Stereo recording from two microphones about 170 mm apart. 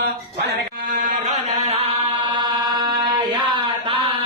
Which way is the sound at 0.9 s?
50° right (ahead or behind).